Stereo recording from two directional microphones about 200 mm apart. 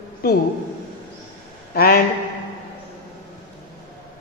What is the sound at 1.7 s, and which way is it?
Speech, 50° left (ahead or behind).